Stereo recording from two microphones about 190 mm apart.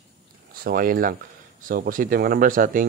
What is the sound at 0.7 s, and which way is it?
Speech, 50° right (ahead or behind).